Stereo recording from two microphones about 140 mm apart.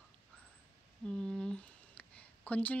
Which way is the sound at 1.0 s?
5° left (ahead or behind).